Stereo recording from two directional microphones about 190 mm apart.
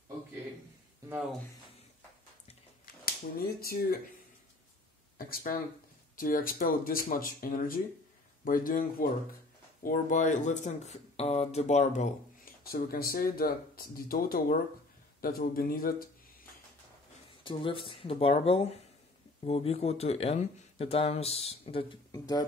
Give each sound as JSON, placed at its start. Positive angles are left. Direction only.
{"t": 3.3, "sound": "speech", "side_deg": 50}
{"t": 5.1, "sound": "speech", "side_deg": 45}
{"t": 9.8, "sound": "speech", "side_deg": 45}
{"t": 12.6, "sound": "speech", "side_deg": 50}
{"t": 17.4, "sound": "speech", "side_deg": 25}